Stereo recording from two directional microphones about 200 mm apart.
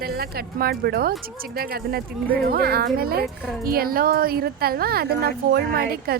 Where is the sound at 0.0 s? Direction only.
50° right (ahead or behind).